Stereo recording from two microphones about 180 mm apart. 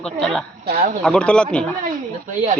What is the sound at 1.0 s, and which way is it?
Speech, 5° left (ahead or behind).